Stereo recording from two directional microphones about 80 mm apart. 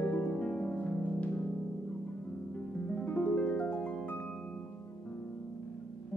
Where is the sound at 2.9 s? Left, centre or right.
Centre.